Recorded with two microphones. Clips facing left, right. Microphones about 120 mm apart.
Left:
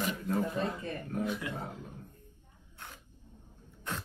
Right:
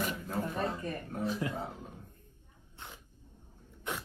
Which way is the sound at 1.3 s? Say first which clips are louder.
Right 2 dB; 35° right (ahead or behind).